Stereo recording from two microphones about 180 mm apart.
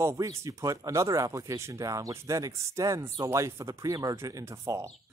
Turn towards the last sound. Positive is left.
turn(degrees=-15)  # may be behind; listen again after turning